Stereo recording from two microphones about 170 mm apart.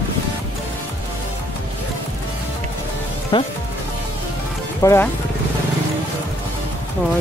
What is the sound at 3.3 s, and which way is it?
Speech, 30° left (ahead or behind).